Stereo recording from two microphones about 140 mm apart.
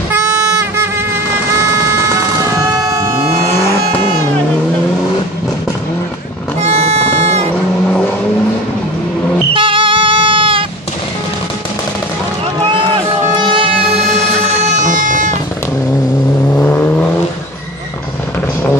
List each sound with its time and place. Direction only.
2.0 s vehicle: 20° right (ahead or behind)
3.5 s vehicle: 20° left (ahead or behind)
6.6 s music: 50° right (ahead or behind)
9.5 s a sound: 40° right (ahead or behind)
12.6 s run: 35° right (ahead or behind)
13.4 s music: 40° right (ahead or behind)
14.6 s a sound: 65° right (ahead or behind)
16.4 s vehicle: 15° left (ahead or behind)